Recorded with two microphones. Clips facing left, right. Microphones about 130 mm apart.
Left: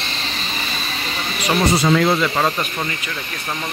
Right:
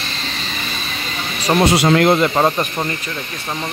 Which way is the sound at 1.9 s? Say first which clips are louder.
Right 3 dB; 55° right (ahead or behind).